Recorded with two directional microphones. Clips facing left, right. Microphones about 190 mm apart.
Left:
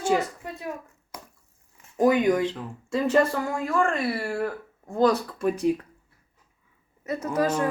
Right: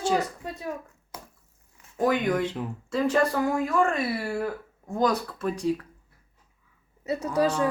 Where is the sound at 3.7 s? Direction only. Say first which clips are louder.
Left 3 dB; 5° right (ahead or behind).